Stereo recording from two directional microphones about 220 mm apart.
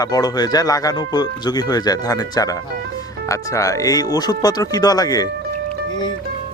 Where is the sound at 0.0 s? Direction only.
15° left (ahead or behind).